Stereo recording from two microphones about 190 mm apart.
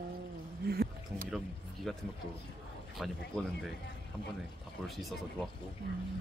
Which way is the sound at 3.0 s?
Centre (ahead or behind).